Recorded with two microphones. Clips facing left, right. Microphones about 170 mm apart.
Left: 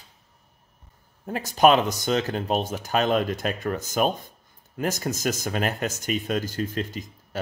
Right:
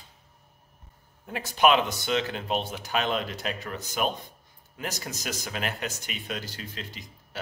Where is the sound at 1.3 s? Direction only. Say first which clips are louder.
Left 4 dB; 40° left (ahead or behind).